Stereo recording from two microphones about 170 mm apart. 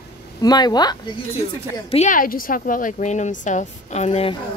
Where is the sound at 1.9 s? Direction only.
45° left (ahead or behind).